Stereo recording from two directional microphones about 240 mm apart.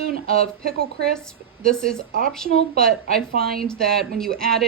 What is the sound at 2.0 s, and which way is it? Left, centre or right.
Speech, right.